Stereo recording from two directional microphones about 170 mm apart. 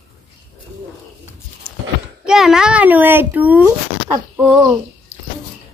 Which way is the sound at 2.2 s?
5° right (ahead or behind).